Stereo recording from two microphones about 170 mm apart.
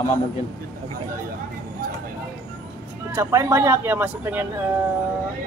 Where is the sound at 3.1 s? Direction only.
15° right (ahead or behind).